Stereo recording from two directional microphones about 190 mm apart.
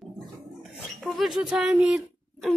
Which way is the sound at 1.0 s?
Centre (ahead or behind).